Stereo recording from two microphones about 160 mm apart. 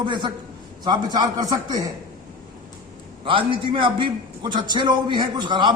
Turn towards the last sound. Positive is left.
turn(degrees=-30)  # may be behind; listen again after turning